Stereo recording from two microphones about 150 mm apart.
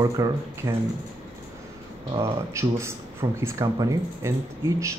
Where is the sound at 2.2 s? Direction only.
20° right (ahead or behind).